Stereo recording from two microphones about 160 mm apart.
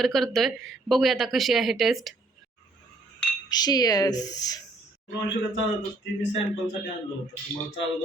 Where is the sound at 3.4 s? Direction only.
25° left (ahead or behind).